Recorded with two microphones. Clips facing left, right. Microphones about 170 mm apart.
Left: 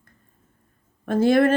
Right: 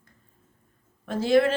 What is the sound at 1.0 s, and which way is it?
Speech, 55° left (ahead or behind).